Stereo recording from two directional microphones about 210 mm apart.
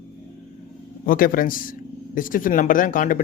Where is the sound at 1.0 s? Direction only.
40° left (ahead or behind).